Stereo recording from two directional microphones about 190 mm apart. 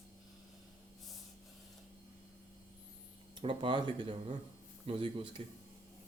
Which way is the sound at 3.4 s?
25° right (ahead or behind).